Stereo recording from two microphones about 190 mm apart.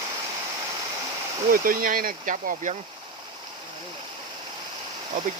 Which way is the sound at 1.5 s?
50° right (ahead or behind).